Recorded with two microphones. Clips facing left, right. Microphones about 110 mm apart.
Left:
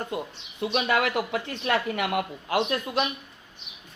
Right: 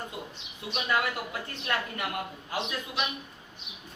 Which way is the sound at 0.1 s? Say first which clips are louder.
Left 8 dB; 60° left (ahead or behind).